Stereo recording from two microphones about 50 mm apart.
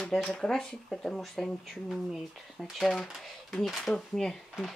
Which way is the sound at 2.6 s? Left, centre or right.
Centre.